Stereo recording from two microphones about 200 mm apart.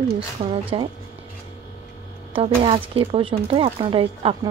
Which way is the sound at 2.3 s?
25° right (ahead or behind).